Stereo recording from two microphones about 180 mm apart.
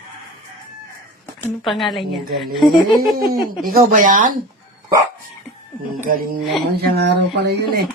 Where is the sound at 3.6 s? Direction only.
50° right (ahead or behind).